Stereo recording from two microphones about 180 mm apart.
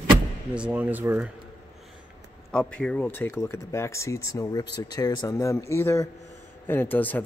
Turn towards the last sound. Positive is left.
turn(degrees=10)  # may be behind; listen again after turning